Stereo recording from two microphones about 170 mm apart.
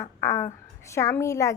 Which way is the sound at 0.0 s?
20° left (ahead or behind).